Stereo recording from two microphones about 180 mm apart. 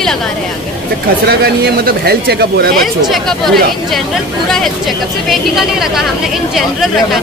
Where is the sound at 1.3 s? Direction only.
60° right (ahead or behind).